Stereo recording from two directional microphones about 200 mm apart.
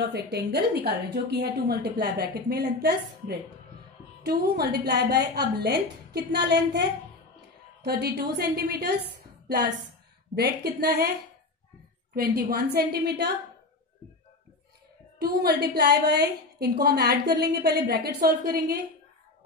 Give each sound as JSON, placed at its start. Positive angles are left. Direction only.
{"t": 0.0, "sound": "a woman's voice", "side_deg": -55}
{"t": 7.8, "sound": "a woman's voice", "side_deg": -50}
{"t": 12.2, "sound": "a woman's voice", "side_deg": -50}
{"t": 15.1, "sound": "a woman's voice", "side_deg": -50}